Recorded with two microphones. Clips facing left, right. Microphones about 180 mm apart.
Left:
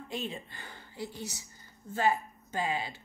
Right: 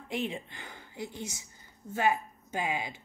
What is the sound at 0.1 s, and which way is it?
Speech, 15° right (ahead or behind).